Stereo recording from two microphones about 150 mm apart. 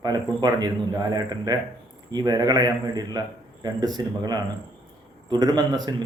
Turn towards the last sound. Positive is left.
turn(degrees=-25)  # may be behind; listen again after turning